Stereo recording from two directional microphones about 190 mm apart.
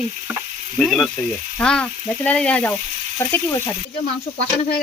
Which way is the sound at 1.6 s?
5° left (ahead or behind).